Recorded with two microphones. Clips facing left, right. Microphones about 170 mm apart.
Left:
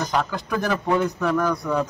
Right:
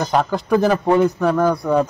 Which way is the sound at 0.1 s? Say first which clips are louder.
Right 7 dB; 30° right (ahead or behind).